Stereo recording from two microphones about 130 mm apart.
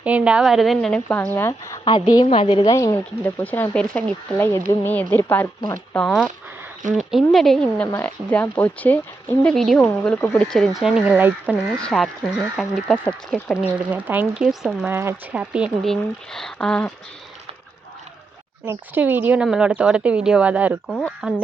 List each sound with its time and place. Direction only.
0.0 s speech: 10° right (ahead or behind)
1.0 s speech: 15° left (ahead or behind)
1.8 s a woman's voice: 40° left (ahead or behind)
2.5 s speech: 30° left (ahead or behind); by 6.1 s 15° left (ahead or behind)
6.1 s speech: centre (ahead or behind)
11.8 s speech: 5° left (ahead or behind)
13.5 s speech: 10° right (ahead or behind)
14.4 s speech: 5° right (ahead or behind)
14.8 s speech: 20° right (ahead or behind)
15.3 s speech: 10° right (ahead or behind)
15.8 s speech: 5° left (ahead or behind)
18.6 s speech: 15° right (ahead or behind)
20.8 s speech: 10° left (ahead or behind)
21.2 s speech: 5° right (ahead or behind)